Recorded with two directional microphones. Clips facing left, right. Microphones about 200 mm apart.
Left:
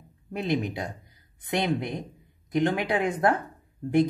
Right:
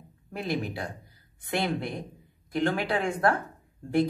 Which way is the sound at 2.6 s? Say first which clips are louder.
Left 1 dB; 20° left (ahead or behind).